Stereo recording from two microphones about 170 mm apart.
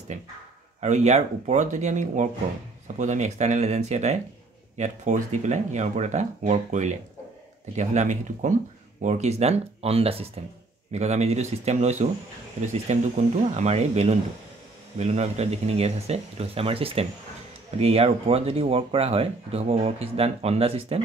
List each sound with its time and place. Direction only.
0.7 s speech: 45° right (ahead or behind)